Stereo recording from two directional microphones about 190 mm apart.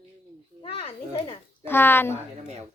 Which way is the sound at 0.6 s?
30° left (ahead or behind).